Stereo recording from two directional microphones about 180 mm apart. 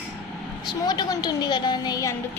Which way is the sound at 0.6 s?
20° left (ahead or behind).